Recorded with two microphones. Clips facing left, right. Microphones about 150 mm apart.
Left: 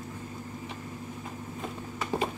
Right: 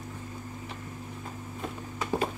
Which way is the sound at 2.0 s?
Centre (ahead or behind).